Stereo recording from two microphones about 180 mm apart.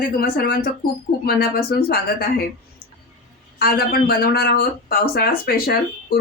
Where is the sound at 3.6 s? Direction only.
55° left (ahead or behind).